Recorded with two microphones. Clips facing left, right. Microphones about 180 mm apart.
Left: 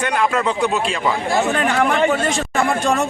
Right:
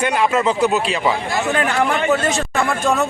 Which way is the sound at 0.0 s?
5° right (ahead or behind).